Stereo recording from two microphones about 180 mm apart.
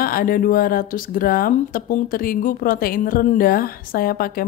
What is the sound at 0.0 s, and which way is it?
Speech, 55° left (ahead or behind).